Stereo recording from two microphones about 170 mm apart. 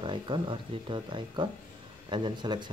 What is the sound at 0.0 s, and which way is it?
Speech, 30° right (ahead or behind).